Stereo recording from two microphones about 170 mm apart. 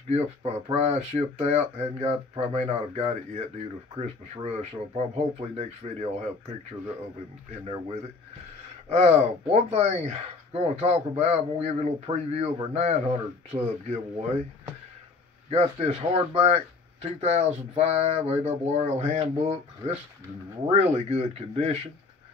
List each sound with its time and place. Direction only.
0.1 s speech: 40° right (ahead or behind)
7.6 s speech: 35° right (ahead or behind)
15.5 s speech: 40° right (ahead or behind)